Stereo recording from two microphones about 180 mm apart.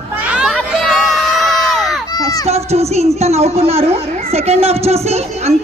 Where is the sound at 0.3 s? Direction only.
Centre (ahead or behind).